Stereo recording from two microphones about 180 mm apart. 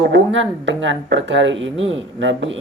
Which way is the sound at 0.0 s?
90° right.